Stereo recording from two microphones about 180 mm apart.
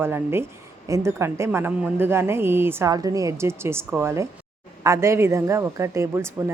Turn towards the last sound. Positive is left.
turn(degrees=-15)  # may be behind; listen again after turning